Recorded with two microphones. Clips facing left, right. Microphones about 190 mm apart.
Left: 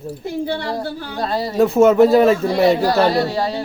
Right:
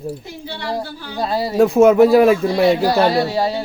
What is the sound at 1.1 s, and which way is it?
Speech, 5° right (ahead or behind).